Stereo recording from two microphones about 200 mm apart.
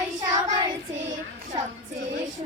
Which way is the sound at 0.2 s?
20° right (ahead or behind).